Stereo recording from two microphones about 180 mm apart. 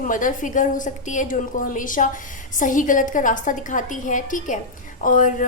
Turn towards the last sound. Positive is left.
turn(degrees=45)  # may be behind; listen again after turning